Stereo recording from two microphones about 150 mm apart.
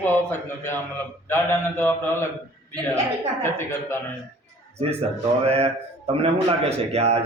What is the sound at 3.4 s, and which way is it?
Speech, 15° left (ahead or behind).